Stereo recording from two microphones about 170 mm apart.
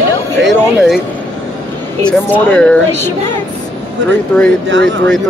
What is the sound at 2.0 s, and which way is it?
Speech, 10° left (ahead or behind).